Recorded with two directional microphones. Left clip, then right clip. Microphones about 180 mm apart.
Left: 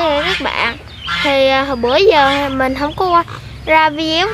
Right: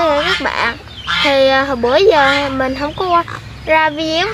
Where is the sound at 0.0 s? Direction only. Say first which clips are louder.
Right 1 dB; 5° left (ahead or behind).